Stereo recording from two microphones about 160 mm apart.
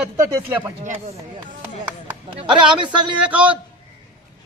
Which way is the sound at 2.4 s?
30° right (ahead or behind).